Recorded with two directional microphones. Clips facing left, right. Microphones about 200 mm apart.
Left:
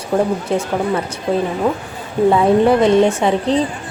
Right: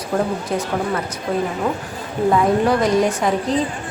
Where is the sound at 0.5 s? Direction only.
25° left (ahead or behind).